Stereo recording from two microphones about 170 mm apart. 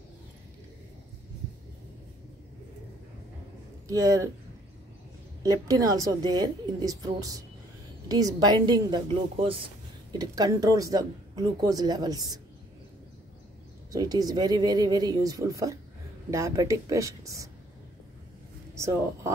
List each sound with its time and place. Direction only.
3.8 s speech: 20° right (ahead or behind)
5.4 s speech: 20° right (ahead or behind)
13.9 s speech: 20° right (ahead or behind)
18.8 s speech: 15° right (ahead or behind)